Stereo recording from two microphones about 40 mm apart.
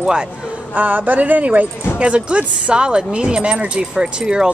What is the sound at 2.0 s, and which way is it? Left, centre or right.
Speech, right.